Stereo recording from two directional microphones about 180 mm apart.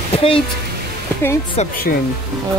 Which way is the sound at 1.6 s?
40° left (ahead or behind).